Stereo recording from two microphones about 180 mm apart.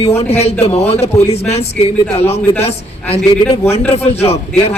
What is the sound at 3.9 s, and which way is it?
Speech, 35° left (ahead or behind).